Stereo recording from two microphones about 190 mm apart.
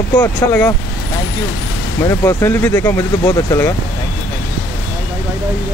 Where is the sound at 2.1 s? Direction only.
15° left (ahead or behind).